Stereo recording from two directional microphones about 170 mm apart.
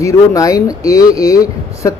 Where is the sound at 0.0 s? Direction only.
20° left (ahead or behind).